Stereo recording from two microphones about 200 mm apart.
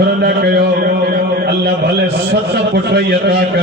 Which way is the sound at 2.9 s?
55° right (ahead or behind).